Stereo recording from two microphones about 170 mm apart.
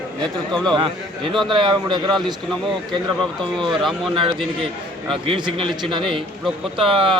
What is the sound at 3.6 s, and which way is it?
Speech, centre (ahead or behind).